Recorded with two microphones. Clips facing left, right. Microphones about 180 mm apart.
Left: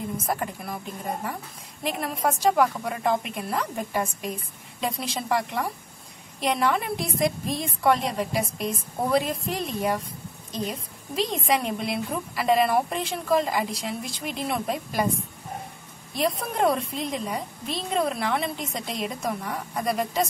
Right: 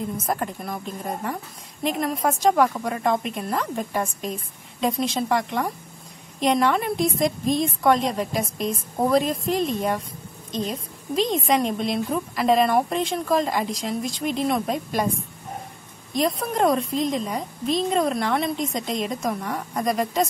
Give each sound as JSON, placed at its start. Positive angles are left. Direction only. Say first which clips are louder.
{"t": 0.3, "sound": "a woman's voice", "louder": "right 2 dB", "side_deg": 5}
{"t": 1.8, "sound": "a woman's voice", "louder": "right 4 dB", "side_deg": 5}
{"t": 16.1, "sound": "a woman's voice", "louder": "right 3 dB", "side_deg": 5}